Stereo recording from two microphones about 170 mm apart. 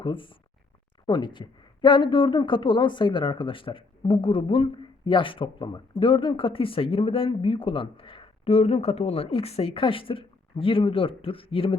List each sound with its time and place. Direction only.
0.0 s speech: 30° left (ahead or behind)